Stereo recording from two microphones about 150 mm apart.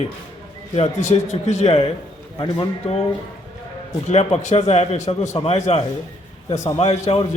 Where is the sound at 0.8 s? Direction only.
50° left (ahead or behind).